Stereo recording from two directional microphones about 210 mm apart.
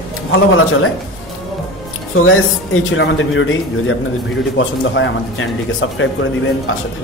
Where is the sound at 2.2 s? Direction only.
75° left (ahead or behind).